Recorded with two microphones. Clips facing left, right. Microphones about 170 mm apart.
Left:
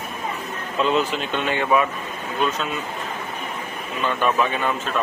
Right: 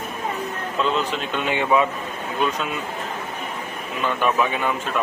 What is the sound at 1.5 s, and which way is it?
Speech, 20° right (ahead or behind).